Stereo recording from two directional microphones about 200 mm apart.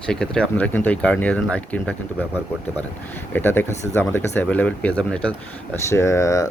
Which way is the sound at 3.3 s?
10° left (ahead or behind).